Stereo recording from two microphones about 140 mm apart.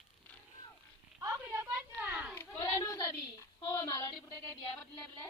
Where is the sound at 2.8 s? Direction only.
20° left (ahead or behind).